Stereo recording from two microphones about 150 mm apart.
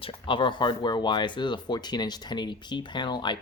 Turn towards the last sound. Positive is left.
turn(degrees=30)  # may be behind; listen again after turning